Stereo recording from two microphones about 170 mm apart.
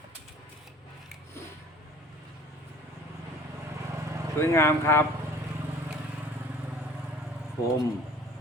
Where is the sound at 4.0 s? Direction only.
15° right (ahead or behind).